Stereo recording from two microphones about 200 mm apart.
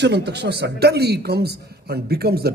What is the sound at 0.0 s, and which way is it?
A man's voice, 55° right (ahead or behind).